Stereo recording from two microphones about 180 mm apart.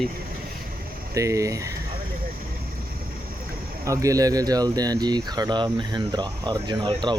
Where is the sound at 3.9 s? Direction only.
20° right (ahead or behind).